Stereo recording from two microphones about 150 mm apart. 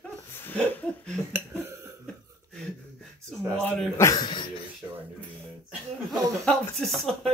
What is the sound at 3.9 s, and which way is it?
Speech, 20° left (ahead or behind).